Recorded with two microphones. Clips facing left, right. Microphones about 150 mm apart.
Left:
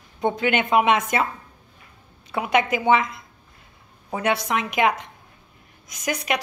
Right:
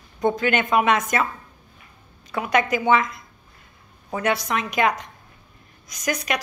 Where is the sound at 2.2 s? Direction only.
20° left (ahead or behind).